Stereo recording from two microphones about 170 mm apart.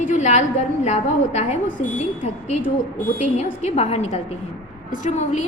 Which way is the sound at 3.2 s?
45° left (ahead or behind).